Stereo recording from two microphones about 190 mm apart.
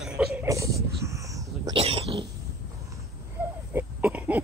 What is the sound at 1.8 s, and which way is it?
Cat, 30° right (ahead or behind).